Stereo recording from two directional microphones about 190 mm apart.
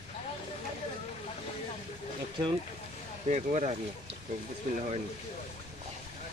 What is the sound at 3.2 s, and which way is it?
Speech, 40° right (ahead or behind).